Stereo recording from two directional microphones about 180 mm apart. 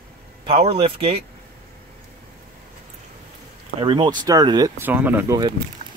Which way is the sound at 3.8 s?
25° right (ahead or behind).